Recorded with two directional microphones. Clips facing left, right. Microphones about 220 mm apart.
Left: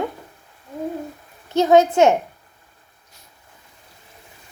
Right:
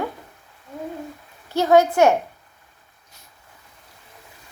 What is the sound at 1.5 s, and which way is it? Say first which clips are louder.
Speech: left 2 dB; 20° left (ahead or behind).